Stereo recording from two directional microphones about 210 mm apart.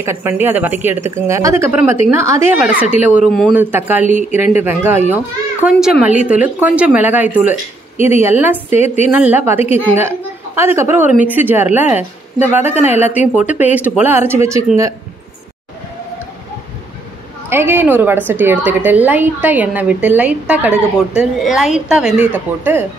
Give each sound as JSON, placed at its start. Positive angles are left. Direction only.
{"t": 0.0, "sound": "a woman's voice", "side_deg": -10}
{"t": 3.5, "sound": "a woman's voice", "side_deg": -10}
{"t": 8.7, "sound": "a woman's voice", "side_deg": 30}
{"t": 9.1, "sound": "a woman's voice", "side_deg": -10}
{"t": 12.6, "sound": "a woman's voice", "side_deg": 30}
{"t": 13.7, "sound": "a woman's voice", "side_deg": -5}
{"t": 17.5, "sound": "a woman's voice", "side_deg": -10}